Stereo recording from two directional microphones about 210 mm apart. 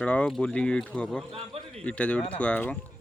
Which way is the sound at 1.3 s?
30° right (ahead or behind).